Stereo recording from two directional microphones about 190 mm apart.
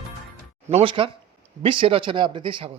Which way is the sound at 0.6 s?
30° right (ahead or behind).